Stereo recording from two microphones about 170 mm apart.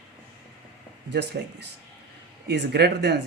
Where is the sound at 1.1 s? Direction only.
80° right.